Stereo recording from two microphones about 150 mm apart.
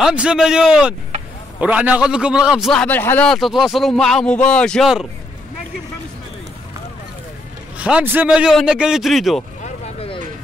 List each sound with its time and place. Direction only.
0.0 s speech: 5° right (ahead or behind); by 3.3 s 15° left (ahead or behind)
3.3 s speech: centre (ahead or behind)
7.7 s speech: 10° right (ahead or behind)
9.6 s vehicle: 50° left (ahead or behind)